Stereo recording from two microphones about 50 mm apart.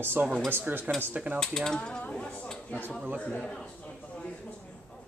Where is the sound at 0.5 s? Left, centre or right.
Right.